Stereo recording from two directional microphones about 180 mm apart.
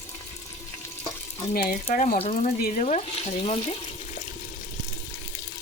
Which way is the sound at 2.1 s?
35° left (ahead or behind).